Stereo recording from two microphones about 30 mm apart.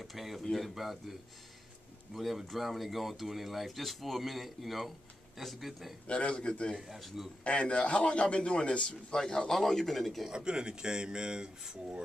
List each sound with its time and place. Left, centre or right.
0.0 s speech: centre
2.1 s speech: centre
6.0 s a man's voice: left
9.5 s speech: centre
10.3 s speech: right